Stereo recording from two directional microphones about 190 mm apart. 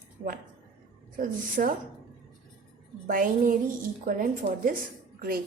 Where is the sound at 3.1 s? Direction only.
45° right (ahead or behind).